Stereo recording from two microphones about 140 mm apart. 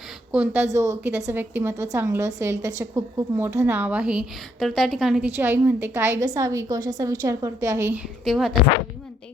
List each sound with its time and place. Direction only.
0.3 s speech: 10° right (ahead or behind)
0.7 s a woman's voice: 20° right (ahead or behind)
3.8 s a woman's voice: 10° right (ahead or behind)
5.2 s a woman's voice: 15° right (ahead or behind)
7.9 s a woman's voice: 5° right (ahead or behind)